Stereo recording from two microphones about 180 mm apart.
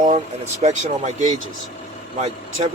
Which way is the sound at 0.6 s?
40° right (ahead or behind).